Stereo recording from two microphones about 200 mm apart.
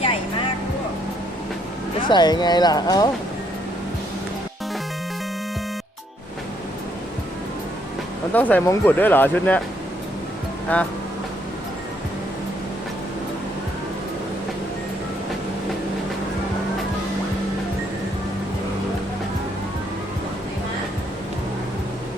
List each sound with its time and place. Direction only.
2.0 s speech: 25° left (ahead or behind)
8.3 s speech: 10° left (ahead or behind)
10.7 s speech: 10° left (ahead or behind)